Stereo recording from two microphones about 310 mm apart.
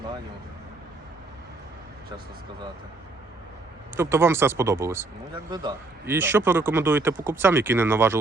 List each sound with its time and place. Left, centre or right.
3.9 s speech: centre